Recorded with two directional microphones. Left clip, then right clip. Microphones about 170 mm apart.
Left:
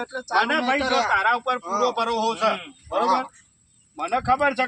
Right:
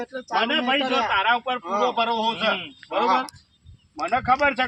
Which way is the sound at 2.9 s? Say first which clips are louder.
Even; 25° left (ahead or behind).